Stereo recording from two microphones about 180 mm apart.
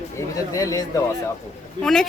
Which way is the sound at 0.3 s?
20° left (ahead or behind).